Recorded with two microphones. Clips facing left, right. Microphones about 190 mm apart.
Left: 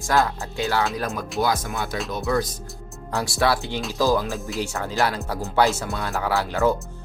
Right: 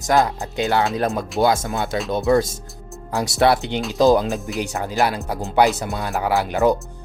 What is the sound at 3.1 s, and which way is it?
Speech, 20° right (ahead or behind).